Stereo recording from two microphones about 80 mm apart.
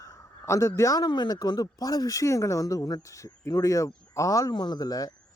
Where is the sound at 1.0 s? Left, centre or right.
Left.